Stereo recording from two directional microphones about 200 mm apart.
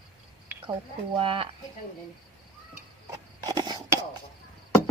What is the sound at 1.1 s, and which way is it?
Speech, 25° right (ahead or behind).